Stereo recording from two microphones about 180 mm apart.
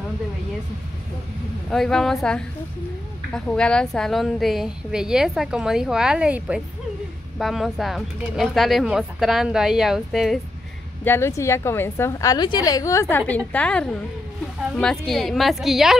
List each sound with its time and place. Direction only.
1.7 s a woman's voice: 5° left (ahead or behind)
3.3 s a woman's voice: 5° left (ahead or behind)
11.1 s a woman's voice: 15° left (ahead or behind); by 16.0 s centre (ahead or behind)